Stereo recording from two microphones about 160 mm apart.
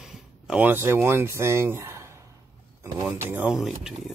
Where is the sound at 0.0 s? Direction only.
5° right (ahead or behind).